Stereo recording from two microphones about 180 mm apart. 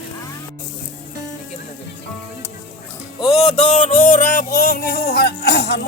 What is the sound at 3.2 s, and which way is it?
Music, 35° left (ahead or behind).